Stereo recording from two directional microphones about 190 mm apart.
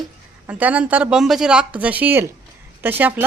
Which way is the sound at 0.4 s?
5° right (ahead or behind).